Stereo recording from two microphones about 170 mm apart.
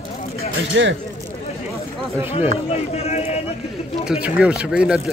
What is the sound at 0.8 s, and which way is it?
Speech, 90° right.